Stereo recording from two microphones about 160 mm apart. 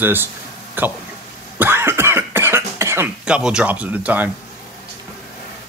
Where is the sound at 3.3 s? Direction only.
5° right (ahead or behind).